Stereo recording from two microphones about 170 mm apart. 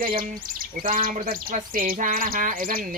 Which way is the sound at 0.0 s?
55° right (ahead or behind).